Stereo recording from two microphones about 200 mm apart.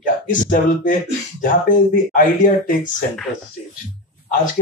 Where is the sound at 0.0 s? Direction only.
40° left (ahead or behind).